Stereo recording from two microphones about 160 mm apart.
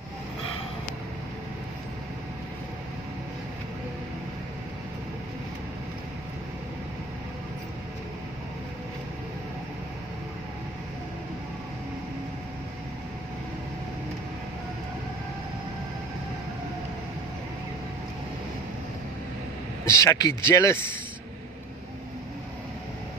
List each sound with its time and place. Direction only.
19.8 s speech: 20° left (ahead or behind)